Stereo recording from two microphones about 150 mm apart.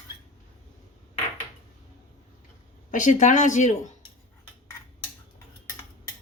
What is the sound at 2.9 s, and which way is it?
Speech, 55° left (ahead or behind).